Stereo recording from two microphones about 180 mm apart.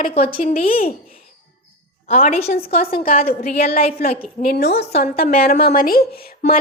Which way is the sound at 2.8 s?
55° left (ahead or behind).